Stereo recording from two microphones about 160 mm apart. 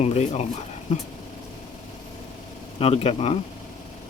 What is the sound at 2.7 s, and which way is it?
Speech, 40° left (ahead or behind).